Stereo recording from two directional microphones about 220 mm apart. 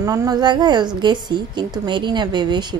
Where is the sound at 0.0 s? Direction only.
15° right (ahead or behind).